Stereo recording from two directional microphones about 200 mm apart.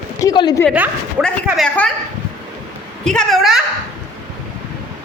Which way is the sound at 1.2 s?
5° left (ahead or behind).